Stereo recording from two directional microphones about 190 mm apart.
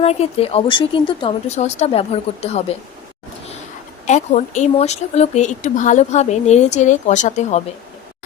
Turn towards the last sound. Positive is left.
turn(degrees=40)  # may be behind; listen again after turning